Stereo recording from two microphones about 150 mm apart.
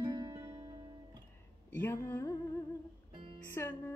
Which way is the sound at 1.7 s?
15° left (ahead or behind).